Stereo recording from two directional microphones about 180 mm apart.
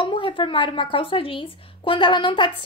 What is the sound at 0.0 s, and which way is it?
Speech, 25° left (ahead or behind).